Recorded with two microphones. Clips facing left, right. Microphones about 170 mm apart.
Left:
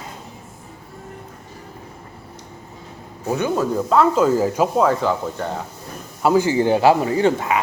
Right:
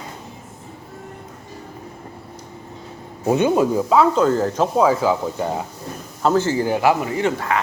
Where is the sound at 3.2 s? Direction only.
20° right (ahead or behind).